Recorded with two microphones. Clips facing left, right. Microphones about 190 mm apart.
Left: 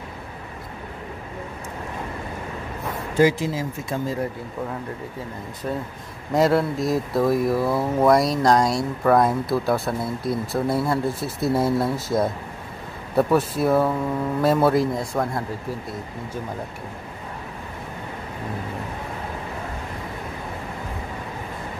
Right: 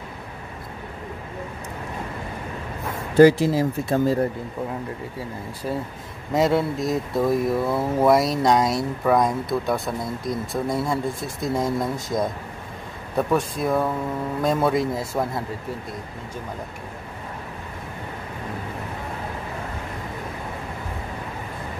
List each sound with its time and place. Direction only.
3.2 s speech: 35° right (ahead or behind)
6.3 s speech: centre (ahead or behind)